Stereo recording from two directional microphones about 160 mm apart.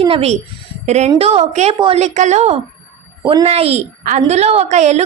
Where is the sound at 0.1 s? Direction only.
40° right (ahead or behind).